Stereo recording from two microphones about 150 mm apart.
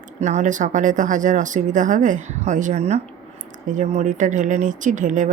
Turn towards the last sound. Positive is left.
turn(degrees=-55)  # may be behind; listen again after turning